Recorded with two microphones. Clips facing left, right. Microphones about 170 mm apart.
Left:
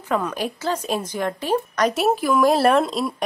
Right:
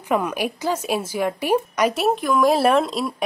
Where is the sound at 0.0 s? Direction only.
10° right (ahead or behind).